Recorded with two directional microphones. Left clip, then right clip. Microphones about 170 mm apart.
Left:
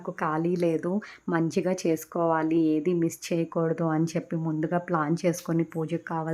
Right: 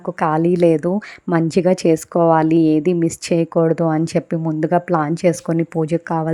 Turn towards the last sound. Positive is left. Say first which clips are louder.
# right 11 dB
turn(degrees=-35)  # may be behind; listen again after turning